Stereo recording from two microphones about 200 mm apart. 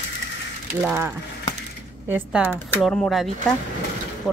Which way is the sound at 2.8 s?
Centre (ahead or behind).